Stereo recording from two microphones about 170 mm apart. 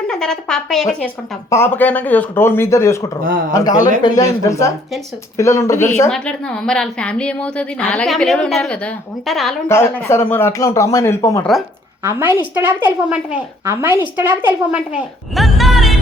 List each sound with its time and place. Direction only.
0.1 s speech: 5° left (ahead or behind)
1.5 s speech: 15° left (ahead or behind)
3.2 s speech: 55° right (ahead or behind)
3.5 s a man's voice: 20° left (ahead or behind)
6.1 s a woman's voice: 5° left (ahead or behind)
9.6 s speech: 15° left (ahead or behind)
12.0 s a woman's voice: 15° right (ahead or behind)